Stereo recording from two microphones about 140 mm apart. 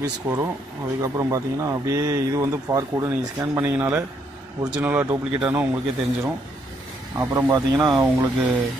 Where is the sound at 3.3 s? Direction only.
15° right (ahead or behind).